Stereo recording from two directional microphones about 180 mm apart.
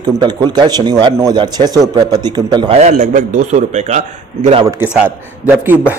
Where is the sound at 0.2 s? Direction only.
25° right (ahead or behind).